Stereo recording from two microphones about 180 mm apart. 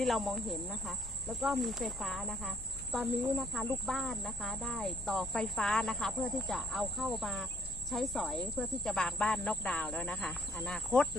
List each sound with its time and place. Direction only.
0.0 s cricket: centre (ahead or behind)